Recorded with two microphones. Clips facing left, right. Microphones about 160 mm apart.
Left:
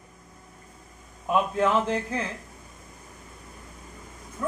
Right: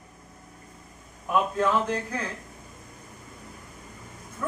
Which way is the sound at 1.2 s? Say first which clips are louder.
Left 1 dB; 20° left (ahead or behind).